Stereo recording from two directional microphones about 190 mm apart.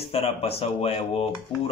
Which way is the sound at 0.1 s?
30° left (ahead or behind).